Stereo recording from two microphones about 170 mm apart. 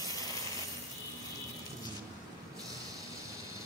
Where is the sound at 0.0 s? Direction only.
20° left (ahead or behind).